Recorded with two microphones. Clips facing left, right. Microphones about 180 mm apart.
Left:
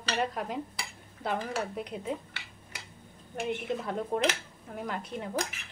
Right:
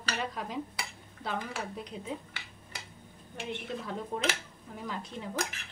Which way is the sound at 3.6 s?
55° left (ahead or behind).